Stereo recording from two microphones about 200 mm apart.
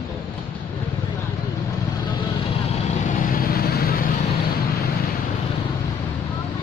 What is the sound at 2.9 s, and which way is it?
Vehicle, 40° left (ahead or behind).